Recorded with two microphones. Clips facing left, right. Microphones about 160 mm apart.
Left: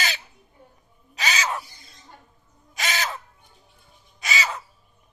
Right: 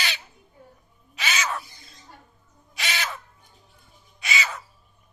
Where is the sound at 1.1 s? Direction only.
35° left (ahead or behind).